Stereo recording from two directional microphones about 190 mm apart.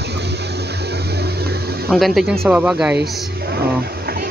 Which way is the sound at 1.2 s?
60° right (ahead or behind).